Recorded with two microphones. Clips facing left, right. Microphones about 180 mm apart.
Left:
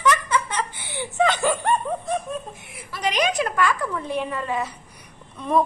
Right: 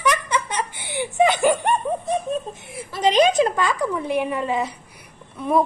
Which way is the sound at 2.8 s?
25° right (ahead or behind).